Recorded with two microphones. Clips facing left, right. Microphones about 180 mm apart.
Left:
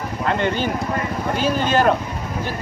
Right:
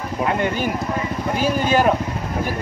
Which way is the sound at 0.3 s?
10° right (ahead or behind).